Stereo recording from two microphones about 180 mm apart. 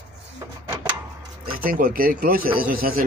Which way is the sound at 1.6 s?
55° right (ahead or behind).